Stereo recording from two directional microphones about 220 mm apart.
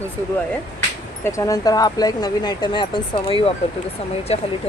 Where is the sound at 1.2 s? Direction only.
15° left (ahead or behind).